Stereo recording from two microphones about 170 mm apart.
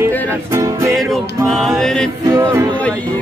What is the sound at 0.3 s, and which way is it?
Music, 15° right (ahead or behind).